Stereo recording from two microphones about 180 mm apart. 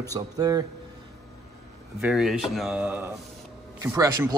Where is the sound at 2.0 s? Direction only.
Centre (ahead or behind).